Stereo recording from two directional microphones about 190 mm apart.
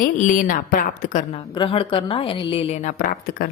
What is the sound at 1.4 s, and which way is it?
A woman's voice, 25° left (ahead or behind).